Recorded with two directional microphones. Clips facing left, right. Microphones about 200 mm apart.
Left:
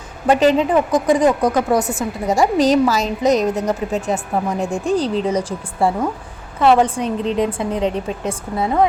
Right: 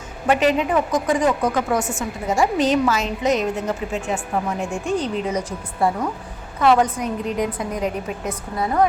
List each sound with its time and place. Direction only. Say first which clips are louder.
0.3 s a woman's voice: left 4 dB; 35° left (ahead or behind)